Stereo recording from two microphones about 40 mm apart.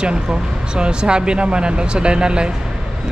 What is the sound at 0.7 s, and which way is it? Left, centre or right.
Speech, right.